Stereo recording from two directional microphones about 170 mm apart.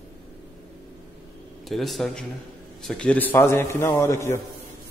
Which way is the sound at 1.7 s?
Centre (ahead or behind).